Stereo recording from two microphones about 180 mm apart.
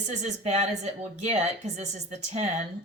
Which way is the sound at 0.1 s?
40° right (ahead or behind).